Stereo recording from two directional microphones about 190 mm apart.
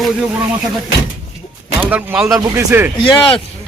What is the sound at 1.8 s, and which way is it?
Speech, 10° right (ahead or behind).